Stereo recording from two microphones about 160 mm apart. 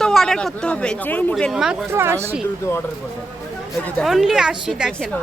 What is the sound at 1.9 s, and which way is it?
Speech, 15° right (ahead or behind).